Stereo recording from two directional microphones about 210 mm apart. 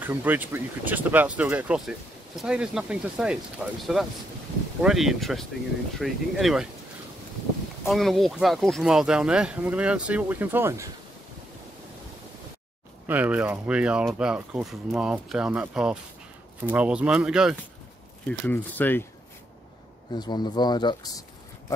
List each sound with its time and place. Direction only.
0.0 s speech: 10° right (ahead or behind)
7.8 s speech: centre (ahead or behind)
13.0 s speech: 10° right (ahead or behind)
18.5 s speech: 10° left (ahead or behind)
20.2 s speech: 20° left (ahead or behind)